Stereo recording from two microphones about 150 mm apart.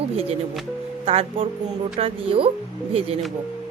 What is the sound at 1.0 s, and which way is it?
A woman's voice, 40° right (ahead or behind).